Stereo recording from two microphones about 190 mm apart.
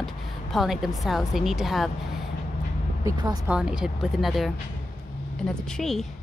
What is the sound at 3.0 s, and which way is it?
Speech, 20° right (ahead or behind).